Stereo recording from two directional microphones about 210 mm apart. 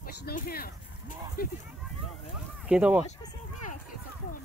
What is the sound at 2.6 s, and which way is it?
Speech, 5° right (ahead or behind).